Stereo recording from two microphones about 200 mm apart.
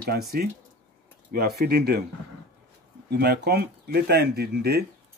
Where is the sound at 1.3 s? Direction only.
50° right (ahead or behind).